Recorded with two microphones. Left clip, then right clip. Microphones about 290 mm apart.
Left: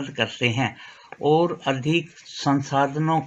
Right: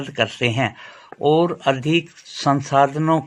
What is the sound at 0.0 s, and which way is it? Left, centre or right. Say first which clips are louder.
Speech: right 3 dB; right.